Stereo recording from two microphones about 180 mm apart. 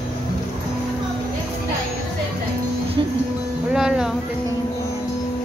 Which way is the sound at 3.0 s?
25° right (ahead or behind).